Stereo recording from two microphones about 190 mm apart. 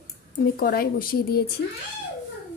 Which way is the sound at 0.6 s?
50° left (ahead or behind).